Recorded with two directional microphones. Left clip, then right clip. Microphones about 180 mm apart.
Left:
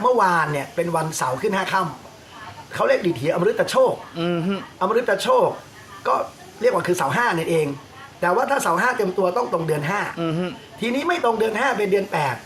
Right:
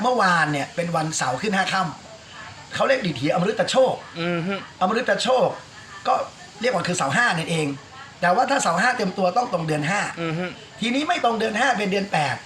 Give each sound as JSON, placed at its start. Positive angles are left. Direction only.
{"t": 0.0, "sound": "speech", "side_deg": 20}
{"t": 4.1, "sound": "speech", "side_deg": 35}
{"t": 4.8, "sound": "speech", "side_deg": 20}
{"t": 6.6, "sound": "speech", "side_deg": 15}
{"t": 10.2, "sound": "speech", "side_deg": 35}
{"t": 11.0, "sound": "speech", "side_deg": 15}